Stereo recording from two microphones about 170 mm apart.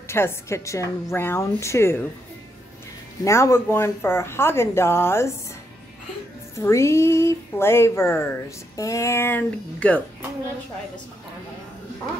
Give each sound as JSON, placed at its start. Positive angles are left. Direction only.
{"t": 0.1, "sound": "speech", "side_deg": 15}
{"t": 3.3, "sound": "speech", "side_deg": 15}
{"t": 6.5, "sound": "speech", "side_deg": 15}